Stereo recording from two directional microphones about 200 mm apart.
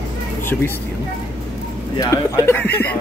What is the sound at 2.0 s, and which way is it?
Speech, 15° left (ahead or behind).